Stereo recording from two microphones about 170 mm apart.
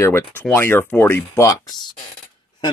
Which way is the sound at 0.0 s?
15° left (ahead or behind).